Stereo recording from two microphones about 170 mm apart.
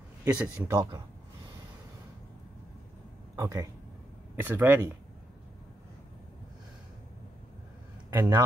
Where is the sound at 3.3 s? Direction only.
20° right (ahead or behind).